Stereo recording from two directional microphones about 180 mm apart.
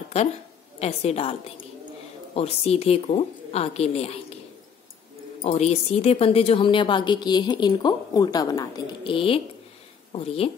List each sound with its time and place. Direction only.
0.7 s a woman's voice: 35° left (ahead or behind)
2.3 s a woman's voice: 35° left (ahead or behind)
5.4 s a woman's voice: 40° left (ahead or behind)